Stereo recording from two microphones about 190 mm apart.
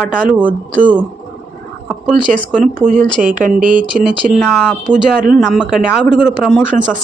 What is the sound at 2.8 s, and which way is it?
Speech, 45° right (ahead or behind).